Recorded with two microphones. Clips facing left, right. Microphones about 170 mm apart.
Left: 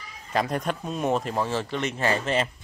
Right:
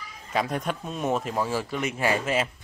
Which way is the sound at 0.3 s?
Centre (ahead or behind).